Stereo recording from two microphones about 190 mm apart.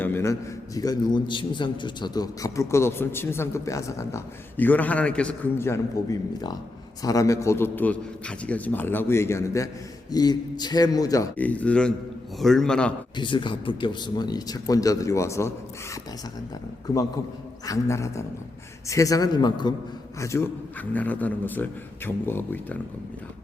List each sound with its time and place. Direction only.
0.0 s a man's voice: 10° left (ahead or behind)
13.1 s speech: 25° left (ahead or behind)
16.8 s a man's voice: 20° left (ahead or behind)